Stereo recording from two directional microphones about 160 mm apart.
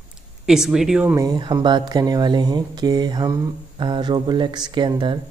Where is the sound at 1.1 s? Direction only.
25° right (ahead or behind).